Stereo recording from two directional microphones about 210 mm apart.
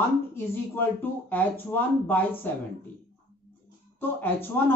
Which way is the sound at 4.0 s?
10° left (ahead or behind).